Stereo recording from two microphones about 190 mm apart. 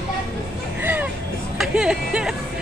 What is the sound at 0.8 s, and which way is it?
Music, 10° right (ahead or behind).